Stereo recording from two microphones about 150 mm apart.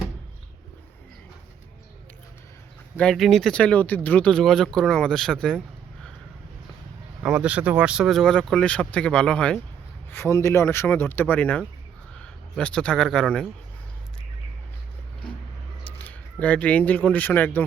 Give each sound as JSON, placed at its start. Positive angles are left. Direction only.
{"t": 3.0, "sound": "speech", "side_deg": 5}
{"t": 7.2, "sound": "speech", "side_deg": -10}
{"t": 16.0, "sound": "speech", "side_deg": 10}